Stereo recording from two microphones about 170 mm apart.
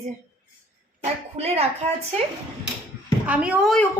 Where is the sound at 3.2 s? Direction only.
5° right (ahead or behind).